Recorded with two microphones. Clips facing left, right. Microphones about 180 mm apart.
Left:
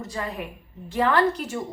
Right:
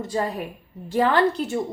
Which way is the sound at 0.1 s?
35° right (ahead or behind).